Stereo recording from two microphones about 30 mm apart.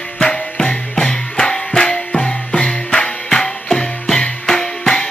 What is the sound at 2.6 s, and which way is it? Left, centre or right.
Music, left.